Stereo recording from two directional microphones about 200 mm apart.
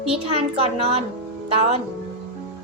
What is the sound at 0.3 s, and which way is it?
A woman's voice, 30° right (ahead or behind).